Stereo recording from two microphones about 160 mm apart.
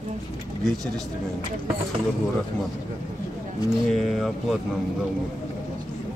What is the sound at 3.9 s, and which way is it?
Speech, centre (ahead or behind).